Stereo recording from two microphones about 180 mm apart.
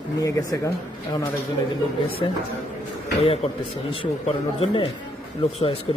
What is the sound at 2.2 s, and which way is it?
Speech, 30° left (ahead or behind).